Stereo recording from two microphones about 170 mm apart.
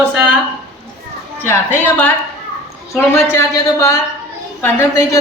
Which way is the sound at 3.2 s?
15° left (ahead or behind).